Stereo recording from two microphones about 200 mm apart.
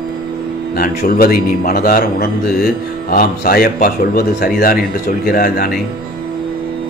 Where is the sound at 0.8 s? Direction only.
45° left (ahead or behind).